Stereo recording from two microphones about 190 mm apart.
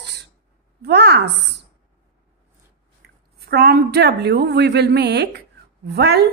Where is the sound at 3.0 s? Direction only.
55° right (ahead or behind).